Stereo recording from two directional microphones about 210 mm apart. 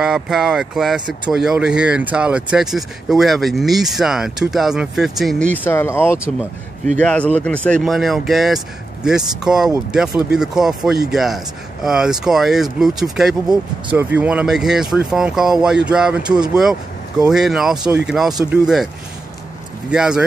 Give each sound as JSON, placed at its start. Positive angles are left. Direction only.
{"t": 0.0, "sound": "speech", "side_deg": 0}
{"t": 19.9, "sound": "speech", "side_deg": -5}